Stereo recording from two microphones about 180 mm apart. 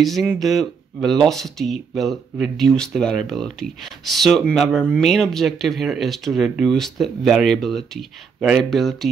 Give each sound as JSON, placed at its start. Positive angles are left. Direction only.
{"t": 0.0, "sound": "speech", "side_deg": 0}